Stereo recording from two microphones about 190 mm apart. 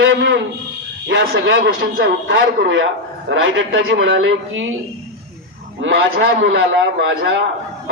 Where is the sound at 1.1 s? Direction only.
80° right.